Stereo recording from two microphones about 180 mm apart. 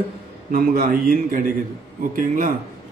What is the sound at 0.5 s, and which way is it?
Speech, 55° right (ahead or behind).